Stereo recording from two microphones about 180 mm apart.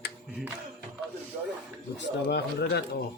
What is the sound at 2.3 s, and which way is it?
Speech, 65° left (ahead or behind).